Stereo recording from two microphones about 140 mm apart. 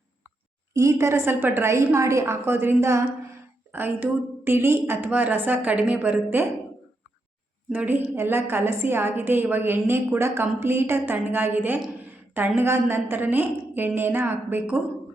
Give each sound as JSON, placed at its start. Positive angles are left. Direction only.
{"t": 0.7, "sound": "a woman's voice", "side_deg": -20}
{"t": 7.7, "sound": "a woman's voice", "side_deg": -10}